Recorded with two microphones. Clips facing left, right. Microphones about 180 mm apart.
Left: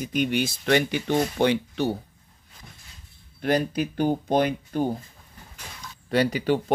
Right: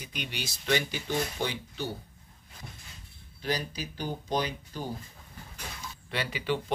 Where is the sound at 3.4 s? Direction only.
55° left (ahead or behind).